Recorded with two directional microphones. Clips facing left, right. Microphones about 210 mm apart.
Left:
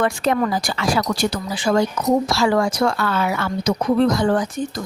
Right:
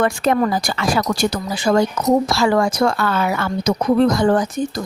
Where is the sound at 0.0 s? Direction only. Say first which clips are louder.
Right 2 dB; 45° right (ahead or behind).